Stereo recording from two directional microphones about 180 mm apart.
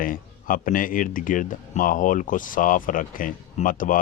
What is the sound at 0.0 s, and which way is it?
Speech, 50° left (ahead or behind).